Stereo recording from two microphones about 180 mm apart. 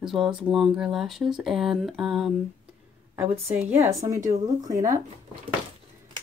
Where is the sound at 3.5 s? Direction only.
10° right (ahead or behind).